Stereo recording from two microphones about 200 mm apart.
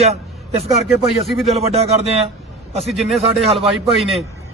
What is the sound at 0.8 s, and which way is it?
Speech, centre (ahead or behind).